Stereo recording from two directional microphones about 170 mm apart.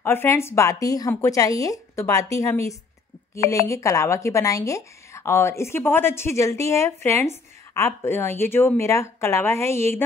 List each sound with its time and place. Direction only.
0.0 s a woman's voice: 15° left (ahead or behind)